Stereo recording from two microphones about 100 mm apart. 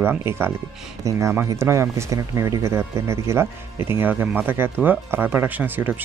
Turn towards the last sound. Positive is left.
turn(degrees=-20)  # may be behind; listen again after turning